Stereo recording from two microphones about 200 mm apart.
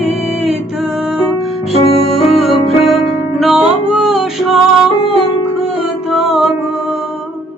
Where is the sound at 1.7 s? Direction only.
25° left (ahead or behind).